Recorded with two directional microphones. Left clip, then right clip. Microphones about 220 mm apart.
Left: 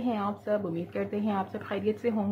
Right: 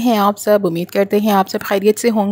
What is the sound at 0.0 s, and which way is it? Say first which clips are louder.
Speech: right 17 dB; 50° right (ahead or behind).